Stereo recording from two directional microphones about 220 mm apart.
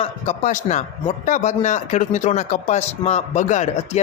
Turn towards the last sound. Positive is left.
turn(degrees=30)  # may be behind; listen again after turning